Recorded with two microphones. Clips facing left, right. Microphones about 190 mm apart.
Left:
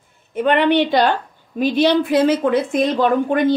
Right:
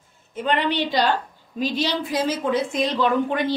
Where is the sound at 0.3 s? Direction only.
60° left (ahead or behind).